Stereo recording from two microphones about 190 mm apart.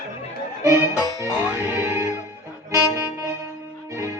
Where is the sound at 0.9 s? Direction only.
15° left (ahead or behind).